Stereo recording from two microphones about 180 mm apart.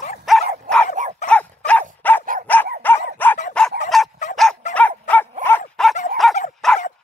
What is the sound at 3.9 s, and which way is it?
Dog, centre (ahead or behind).